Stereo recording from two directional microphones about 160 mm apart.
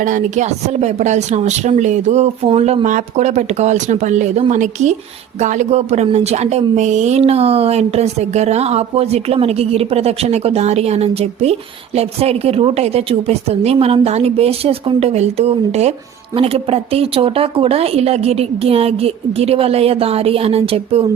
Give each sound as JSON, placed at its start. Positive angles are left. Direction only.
{"t": 0.0, "sound": "a woman's voice", "side_deg": -50}